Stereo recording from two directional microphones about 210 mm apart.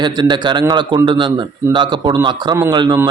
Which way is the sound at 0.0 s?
20° right (ahead or behind).